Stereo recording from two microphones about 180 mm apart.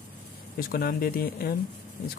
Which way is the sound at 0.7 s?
55° left (ahead or behind).